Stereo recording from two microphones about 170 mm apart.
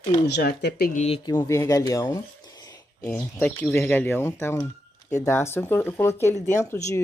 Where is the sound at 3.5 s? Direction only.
15° left (ahead or behind).